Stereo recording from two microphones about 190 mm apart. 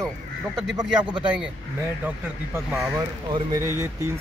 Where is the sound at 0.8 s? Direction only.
5° right (ahead or behind).